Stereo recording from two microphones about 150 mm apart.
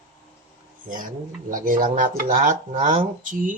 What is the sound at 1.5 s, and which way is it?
Speech, 65° right (ahead or behind).